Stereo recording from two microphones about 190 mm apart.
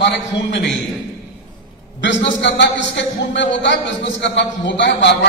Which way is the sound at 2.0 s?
70° left (ahead or behind).